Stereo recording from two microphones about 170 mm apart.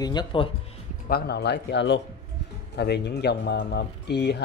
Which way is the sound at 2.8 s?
75° left (ahead or behind).